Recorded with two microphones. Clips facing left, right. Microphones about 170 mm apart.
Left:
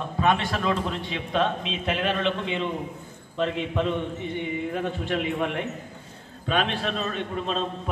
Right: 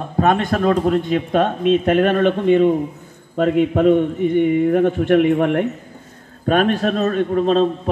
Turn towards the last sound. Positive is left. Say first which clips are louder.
# right 12 dB
turn(degrees=-45)  # may be behind; listen again after turning